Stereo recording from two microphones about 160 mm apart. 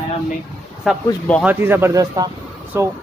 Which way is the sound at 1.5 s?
15° right (ahead or behind).